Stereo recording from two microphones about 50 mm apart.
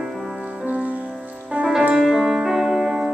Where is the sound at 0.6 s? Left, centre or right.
Right.